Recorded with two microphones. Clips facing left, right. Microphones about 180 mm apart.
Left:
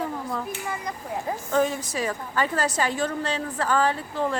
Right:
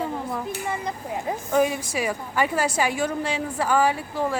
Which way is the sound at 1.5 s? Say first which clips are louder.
Right 2 dB; 15° right (ahead or behind).